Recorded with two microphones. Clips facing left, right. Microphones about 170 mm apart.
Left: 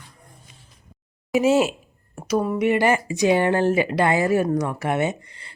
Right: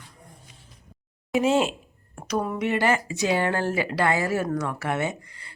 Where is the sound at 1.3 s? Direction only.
5° left (ahead or behind).